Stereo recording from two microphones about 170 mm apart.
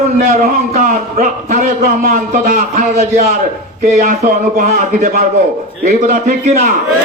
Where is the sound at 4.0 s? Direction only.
55° right (ahead or behind).